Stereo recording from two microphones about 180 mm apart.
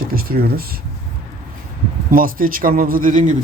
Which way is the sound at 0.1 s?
55° right (ahead or behind).